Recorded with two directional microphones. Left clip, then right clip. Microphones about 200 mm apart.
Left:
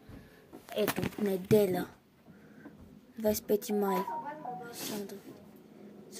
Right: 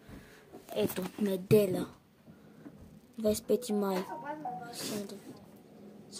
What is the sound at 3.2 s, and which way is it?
Speech, 35° left (ahead or behind).